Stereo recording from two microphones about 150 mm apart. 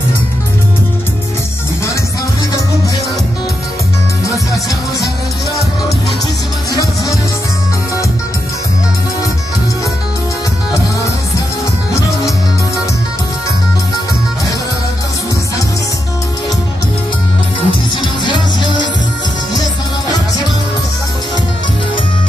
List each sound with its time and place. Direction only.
17.6 s music: 30° left (ahead or behind)